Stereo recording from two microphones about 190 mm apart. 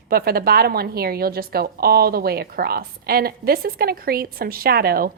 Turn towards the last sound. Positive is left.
turn(degrees=-50)  # may be behind; listen again after turning